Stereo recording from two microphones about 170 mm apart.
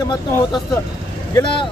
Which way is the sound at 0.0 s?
25° left (ahead or behind).